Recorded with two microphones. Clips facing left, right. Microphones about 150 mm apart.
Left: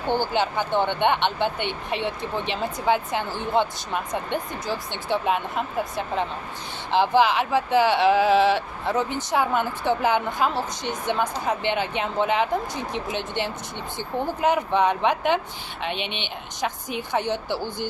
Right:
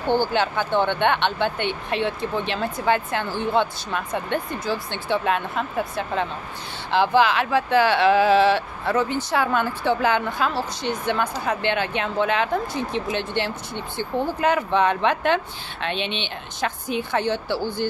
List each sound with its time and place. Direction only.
0.3 s speech: 15° left (ahead or behind)
6.9 s speech: 15° left (ahead or behind)